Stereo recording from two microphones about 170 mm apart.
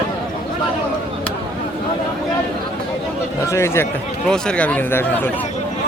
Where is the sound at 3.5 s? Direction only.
15° left (ahead or behind).